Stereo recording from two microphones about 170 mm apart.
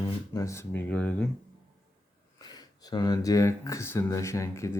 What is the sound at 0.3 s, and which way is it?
Speech, 15° left (ahead or behind).